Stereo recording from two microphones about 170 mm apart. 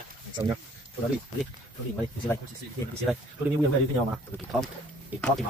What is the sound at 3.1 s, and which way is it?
Speech, centre (ahead or behind).